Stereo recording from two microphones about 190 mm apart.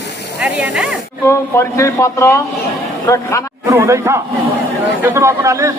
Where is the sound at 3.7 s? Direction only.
15° right (ahead or behind).